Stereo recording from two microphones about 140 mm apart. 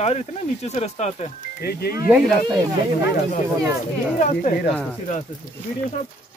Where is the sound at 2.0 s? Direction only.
10° right (ahead or behind).